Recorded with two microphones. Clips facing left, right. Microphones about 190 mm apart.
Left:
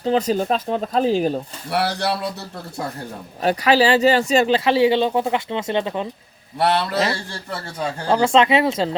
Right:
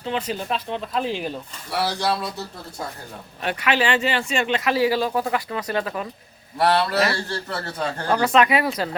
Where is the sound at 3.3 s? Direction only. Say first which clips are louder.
Left 6 dB; 35° left (ahead or behind); by 8.0 s 15° left (ahead or behind).